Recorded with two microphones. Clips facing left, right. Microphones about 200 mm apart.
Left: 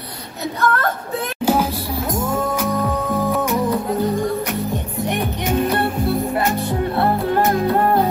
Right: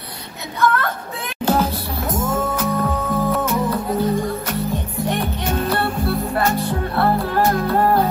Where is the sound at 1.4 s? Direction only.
15° left (ahead or behind).